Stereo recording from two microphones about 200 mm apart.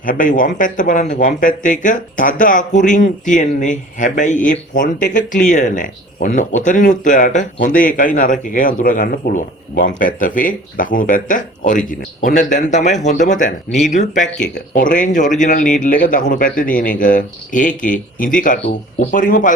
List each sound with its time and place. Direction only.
0.0 s speech: 40° left (ahead or behind)